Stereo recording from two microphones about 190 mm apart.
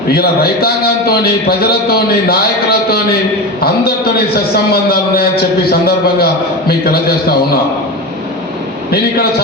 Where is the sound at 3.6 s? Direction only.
55° left (ahead or behind).